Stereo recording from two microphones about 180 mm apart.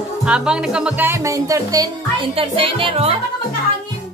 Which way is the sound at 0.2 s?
5° right (ahead or behind).